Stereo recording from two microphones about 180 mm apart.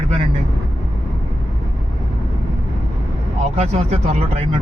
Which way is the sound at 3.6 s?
35° right (ahead or behind).